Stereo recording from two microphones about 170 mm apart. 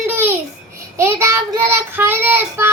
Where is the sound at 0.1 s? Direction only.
10° right (ahead or behind).